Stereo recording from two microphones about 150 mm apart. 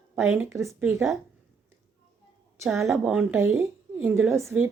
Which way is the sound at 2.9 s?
5° right (ahead or behind).